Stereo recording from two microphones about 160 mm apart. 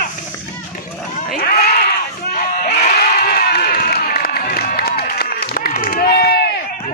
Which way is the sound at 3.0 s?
75° left (ahead or behind).